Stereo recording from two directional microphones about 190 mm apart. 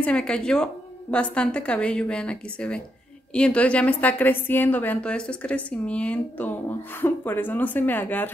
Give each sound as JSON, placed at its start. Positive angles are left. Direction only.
{"t": 0.0, "sound": "a woman's voice", "side_deg": 5}